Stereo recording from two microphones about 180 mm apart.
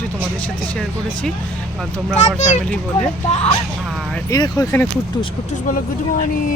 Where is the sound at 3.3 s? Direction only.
35° left (ahead or behind).